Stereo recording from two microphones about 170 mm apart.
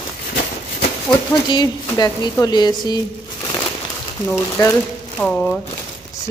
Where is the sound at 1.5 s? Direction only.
25° left (ahead or behind).